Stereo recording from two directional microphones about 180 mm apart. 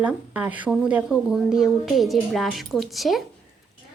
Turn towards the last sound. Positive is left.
turn(degrees=0)  # may be behind; listen again after turning